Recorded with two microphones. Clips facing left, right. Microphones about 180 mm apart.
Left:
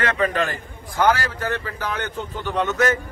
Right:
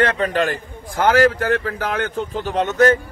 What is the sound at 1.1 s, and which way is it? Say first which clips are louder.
Speech: right 8 dB; 55° right (ahead or behind).